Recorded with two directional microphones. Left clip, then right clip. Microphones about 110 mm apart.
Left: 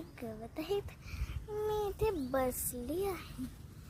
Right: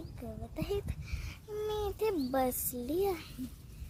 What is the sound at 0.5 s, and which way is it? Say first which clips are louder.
Speech: even; 15° right (ahead or behind).